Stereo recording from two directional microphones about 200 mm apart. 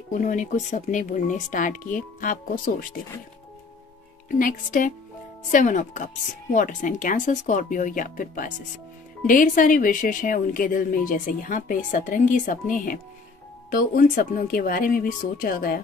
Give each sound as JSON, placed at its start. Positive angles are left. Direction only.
{"t": 0.1, "sound": "speech", "side_deg": 40}
{"t": 4.4, "sound": "speech", "side_deg": 40}